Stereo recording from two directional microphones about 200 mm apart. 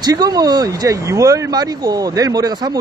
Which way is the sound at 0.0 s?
20° right (ahead or behind).